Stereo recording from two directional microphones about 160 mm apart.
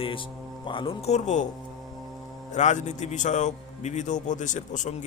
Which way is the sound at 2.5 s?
45° left (ahead or behind).